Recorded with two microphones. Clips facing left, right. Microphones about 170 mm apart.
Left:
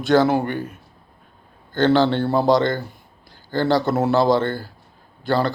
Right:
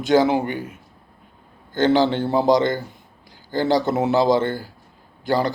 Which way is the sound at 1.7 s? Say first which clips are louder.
Left 1 dB; 15° right (ahead or behind).